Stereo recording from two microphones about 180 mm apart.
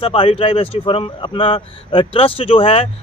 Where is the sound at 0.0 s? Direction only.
30° left (ahead or behind).